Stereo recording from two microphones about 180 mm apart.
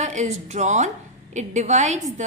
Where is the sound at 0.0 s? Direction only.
40° right (ahead or behind).